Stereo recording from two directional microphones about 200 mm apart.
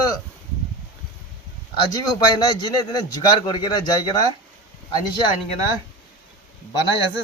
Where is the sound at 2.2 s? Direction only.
20° left (ahead or behind).